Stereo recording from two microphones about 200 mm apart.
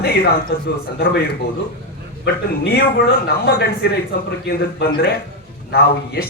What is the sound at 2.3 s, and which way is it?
Speech, 55° left (ahead or behind).